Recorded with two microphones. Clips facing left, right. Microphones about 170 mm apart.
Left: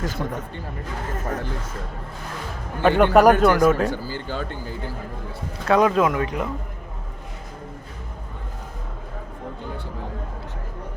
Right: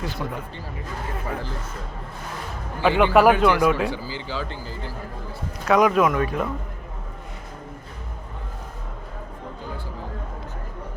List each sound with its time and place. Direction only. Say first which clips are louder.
0.0 s speech: left 2 dB; 45° left (ahead or behind)
3.0 s speech: left 2 dB; 45° left (ahead or behind)
5.6 s speech: even; 30° left (ahead or behind)